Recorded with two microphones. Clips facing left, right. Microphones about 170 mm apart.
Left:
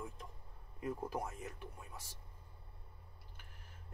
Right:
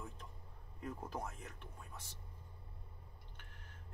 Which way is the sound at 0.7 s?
10° left (ahead or behind).